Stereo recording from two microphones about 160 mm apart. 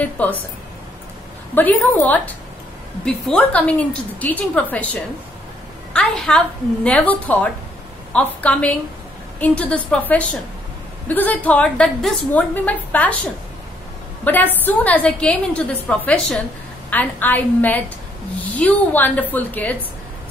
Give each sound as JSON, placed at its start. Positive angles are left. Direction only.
{"t": 0.0, "sound": "a woman's voice", "side_deg": 10}
{"t": 1.5, "sound": "a woman's voice", "side_deg": 10}
{"t": 5.9, "sound": "a woman's voice", "side_deg": 5}
{"t": 14.2, "sound": "a woman's voice", "side_deg": 10}